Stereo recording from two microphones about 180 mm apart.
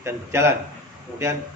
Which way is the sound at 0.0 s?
15° right (ahead or behind).